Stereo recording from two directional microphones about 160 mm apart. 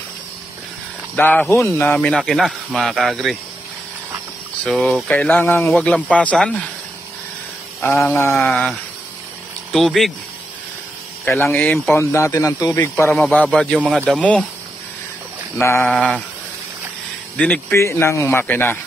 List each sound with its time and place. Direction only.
1.1 s speech: 10° left (ahead or behind)
4.6 s a man's voice: 5° left (ahead or behind)
7.8 s a man's voice: 15° left (ahead or behind)
8.5 s speech: centre (ahead or behind)
11.5 s a man's voice: 10° left (ahead or behind)
13.1 s speech: 5° left (ahead or behind)
15.5 s a man's voice: 15° left (ahead or behind)
17.4 s a man's voice: 10° left (ahead or behind)